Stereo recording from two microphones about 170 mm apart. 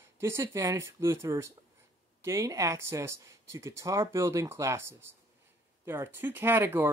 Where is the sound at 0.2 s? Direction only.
15° right (ahead or behind).